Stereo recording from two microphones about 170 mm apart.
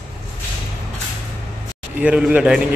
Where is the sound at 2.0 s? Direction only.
5° right (ahead or behind).